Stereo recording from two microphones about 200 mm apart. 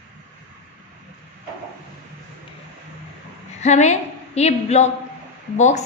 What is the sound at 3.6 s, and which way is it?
A woman's voice, 35° left (ahead or behind).